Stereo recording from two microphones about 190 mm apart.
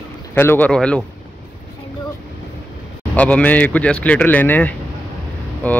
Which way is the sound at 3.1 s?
5° left (ahead or behind).